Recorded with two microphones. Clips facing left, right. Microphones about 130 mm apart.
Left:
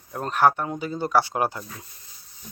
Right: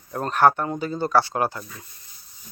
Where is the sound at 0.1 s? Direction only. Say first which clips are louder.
Right 2 dB; 5° left (ahead or behind).